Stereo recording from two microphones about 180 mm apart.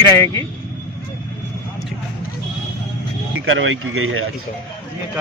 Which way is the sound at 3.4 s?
90° right.